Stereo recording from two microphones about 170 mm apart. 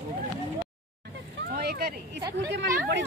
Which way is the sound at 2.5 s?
90° right.